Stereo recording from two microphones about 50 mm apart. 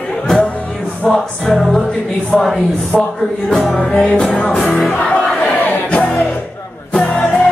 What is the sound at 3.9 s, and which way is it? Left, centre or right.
Music, centre.